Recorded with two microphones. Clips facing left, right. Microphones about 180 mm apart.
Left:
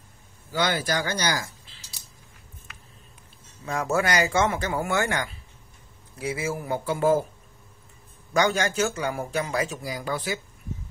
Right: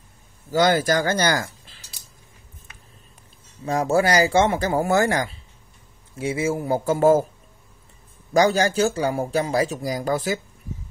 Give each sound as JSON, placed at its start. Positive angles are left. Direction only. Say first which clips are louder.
{"t": 0.5, "sound": "speech", "louder": "right 7 dB", "side_deg": -45}
{"t": 3.6, "sound": "speech", "louder": "right 5 dB", "side_deg": -30}
{"t": 6.8, "sound": "speech", "louder": "right 5 dB", "side_deg": -45}
{"t": 8.3, "sound": "speech", "louder": "right 5 dB", "side_deg": -35}